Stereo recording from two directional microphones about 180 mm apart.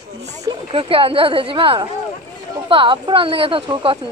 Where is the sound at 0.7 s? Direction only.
30° right (ahead or behind).